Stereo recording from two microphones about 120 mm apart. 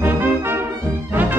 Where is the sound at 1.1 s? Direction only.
15° right (ahead or behind).